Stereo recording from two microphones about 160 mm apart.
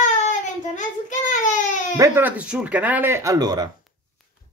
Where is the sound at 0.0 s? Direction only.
50° left (ahead or behind).